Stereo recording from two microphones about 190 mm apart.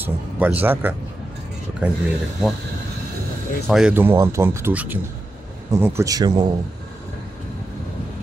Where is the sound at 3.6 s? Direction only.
5° right (ahead or behind); by 6.4 s 20° right (ahead or behind).